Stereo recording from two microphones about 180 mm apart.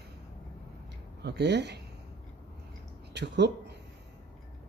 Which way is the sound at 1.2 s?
70° right (ahead or behind).